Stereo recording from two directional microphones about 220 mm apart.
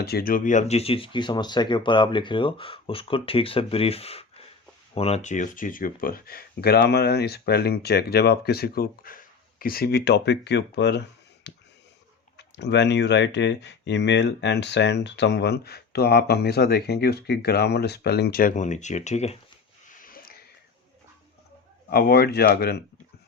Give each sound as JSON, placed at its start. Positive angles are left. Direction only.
{"t": 0.0, "sound": "speech", "side_deg": 45}
{"t": 20.0, "sound": "a sound", "side_deg": 40}
{"t": 21.8, "sound": "speech", "side_deg": 45}